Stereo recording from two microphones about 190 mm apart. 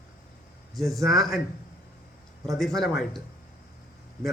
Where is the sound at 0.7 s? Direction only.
Centre (ahead or behind).